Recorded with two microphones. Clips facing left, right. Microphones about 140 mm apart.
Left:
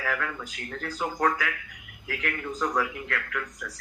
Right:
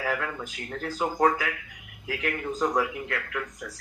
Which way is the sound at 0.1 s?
25° right (ahead or behind).